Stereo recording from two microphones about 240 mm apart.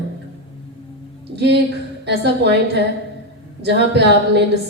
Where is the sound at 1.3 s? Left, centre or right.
Right.